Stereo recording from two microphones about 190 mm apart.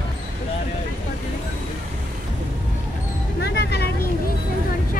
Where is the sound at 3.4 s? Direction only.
60° left (ahead or behind).